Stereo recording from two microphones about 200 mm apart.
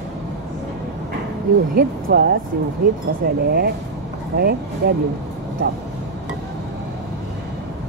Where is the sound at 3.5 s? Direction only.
55° right (ahead or behind).